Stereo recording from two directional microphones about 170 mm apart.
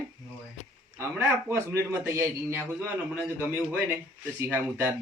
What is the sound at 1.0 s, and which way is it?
A man's voice, 15° right (ahead or behind).